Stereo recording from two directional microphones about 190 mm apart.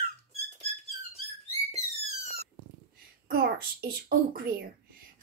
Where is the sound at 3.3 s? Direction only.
50° right (ahead or behind).